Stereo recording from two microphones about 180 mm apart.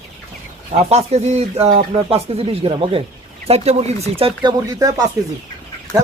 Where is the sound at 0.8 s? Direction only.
35° right (ahead or behind).